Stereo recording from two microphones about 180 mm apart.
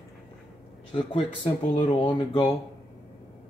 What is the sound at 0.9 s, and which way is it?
Speech, 30° left (ahead or behind).